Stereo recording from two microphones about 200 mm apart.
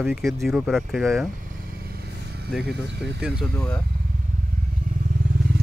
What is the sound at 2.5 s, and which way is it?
Speech, centre (ahead or behind).